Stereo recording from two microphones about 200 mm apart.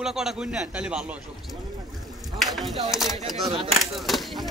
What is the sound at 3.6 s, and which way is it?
Speech, centre (ahead or behind).